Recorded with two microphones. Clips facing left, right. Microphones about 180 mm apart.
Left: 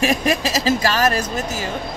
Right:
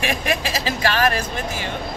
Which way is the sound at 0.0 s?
40° left (ahead or behind).